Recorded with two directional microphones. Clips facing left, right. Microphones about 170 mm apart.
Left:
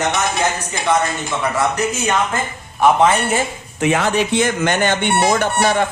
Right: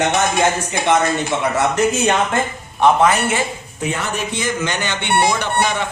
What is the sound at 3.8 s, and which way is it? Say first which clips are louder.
Speech: left 6 dB; 90° left.